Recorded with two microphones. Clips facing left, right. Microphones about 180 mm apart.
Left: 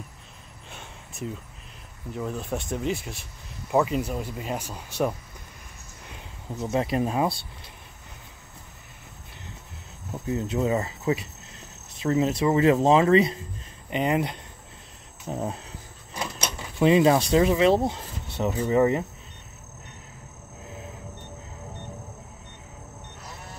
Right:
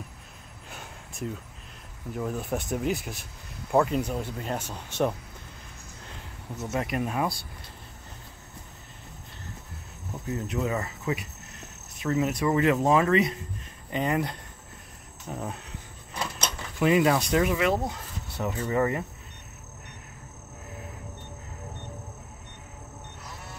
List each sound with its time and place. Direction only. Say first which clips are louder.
0.7 s a sound: even; centre (ahead or behind)
2.1 s speech: even; 5° right (ahead or behind)
6.6 s speech: left 4 dB; 30° left (ahead or behind)
10.2 s speech: left 4 dB; 25° left (ahead or behind)
13.8 s speech: left 3 dB; 20° left (ahead or behind)
15.3 s insect: left 5 dB; 30° left (ahead or behind)
16.2 s a sound: left 1 dB; 10° left (ahead or behind)
16.8 s speech: left 3 dB; 25° left (ahead or behind)